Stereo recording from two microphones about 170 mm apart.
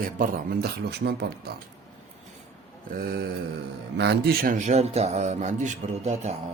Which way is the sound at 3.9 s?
85° right.